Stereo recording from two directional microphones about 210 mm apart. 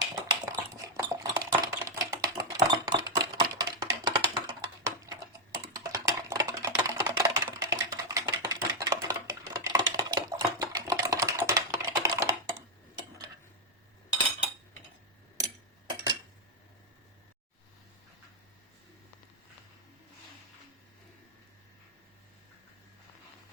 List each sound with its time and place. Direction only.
0.3 s typing: 15° right (ahead or behind)
3.2 s music: 15° right (ahead or behind)
5.5 s typing: 15° right (ahead or behind)